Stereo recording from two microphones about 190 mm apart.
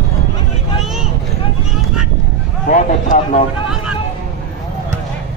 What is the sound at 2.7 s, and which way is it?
Speech, 45° left (ahead or behind).